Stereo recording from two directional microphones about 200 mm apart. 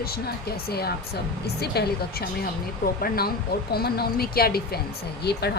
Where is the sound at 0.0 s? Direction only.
50° left (ahead or behind).